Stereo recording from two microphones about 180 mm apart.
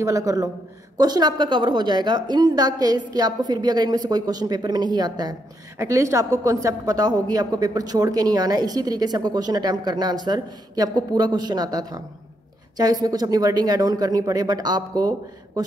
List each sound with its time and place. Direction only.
0.0 s a woman's voice: 20° right (ahead or behind)